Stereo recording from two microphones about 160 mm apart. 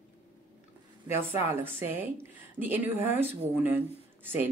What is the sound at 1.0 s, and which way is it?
Speech, 15° right (ahead or behind).